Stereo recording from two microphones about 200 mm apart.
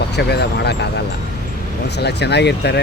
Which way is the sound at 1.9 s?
55° left (ahead or behind).